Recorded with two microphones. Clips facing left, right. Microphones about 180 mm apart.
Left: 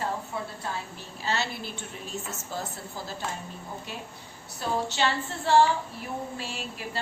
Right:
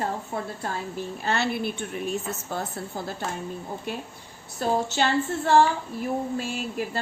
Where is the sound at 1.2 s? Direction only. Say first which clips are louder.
Right 4 dB; 55° right (ahead or behind).